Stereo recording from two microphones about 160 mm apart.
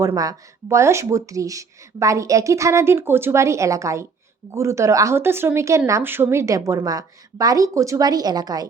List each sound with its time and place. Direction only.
0.0 s speech: 20° right (ahead or behind)